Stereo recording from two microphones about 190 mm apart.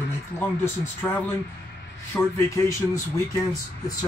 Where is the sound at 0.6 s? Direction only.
10° left (ahead or behind).